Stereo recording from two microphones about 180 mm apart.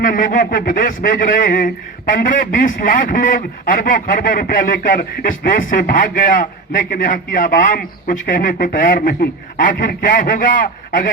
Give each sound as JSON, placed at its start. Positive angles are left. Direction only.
{"t": 0.0, "sound": "a man's voice", "side_deg": 50}